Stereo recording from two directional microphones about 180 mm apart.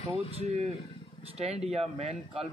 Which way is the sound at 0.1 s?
35° right (ahead or behind).